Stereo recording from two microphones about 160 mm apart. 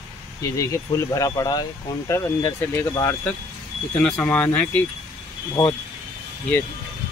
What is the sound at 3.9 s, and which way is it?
Speech, 5° left (ahead or behind).